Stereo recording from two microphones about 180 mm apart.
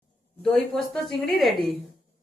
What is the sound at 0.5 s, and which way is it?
A woman's voice, 5° left (ahead or behind).